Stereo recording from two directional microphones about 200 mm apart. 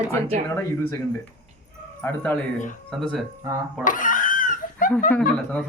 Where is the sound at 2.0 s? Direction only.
10° left (ahead or behind).